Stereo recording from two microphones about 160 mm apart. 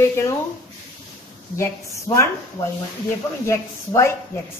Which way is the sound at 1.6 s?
20° left (ahead or behind).